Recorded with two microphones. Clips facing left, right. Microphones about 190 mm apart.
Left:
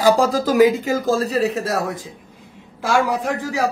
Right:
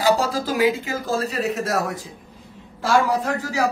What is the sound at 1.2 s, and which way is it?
Speech, 30° left (ahead or behind).